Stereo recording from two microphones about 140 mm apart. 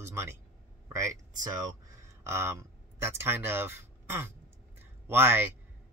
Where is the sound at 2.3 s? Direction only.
20° right (ahead or behind).